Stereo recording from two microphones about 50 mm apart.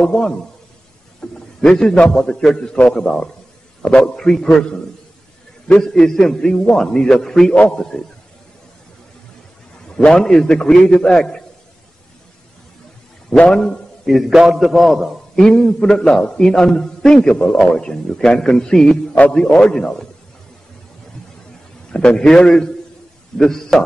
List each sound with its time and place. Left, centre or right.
0.0 s a man's voice: centre
5.8 s a man's voice: centre
10.0 s a man's voice: centre
13.4 s a man's voice: centre
14.0 s a man's voice: centre
15.3 s a man's voice: centre
21.9 s a man's voice: centre